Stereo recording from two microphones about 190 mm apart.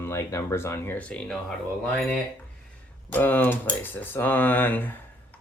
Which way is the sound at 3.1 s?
10° left (ahead or behind).